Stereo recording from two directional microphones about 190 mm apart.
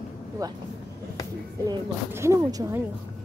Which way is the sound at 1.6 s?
15° right (ahead or behind).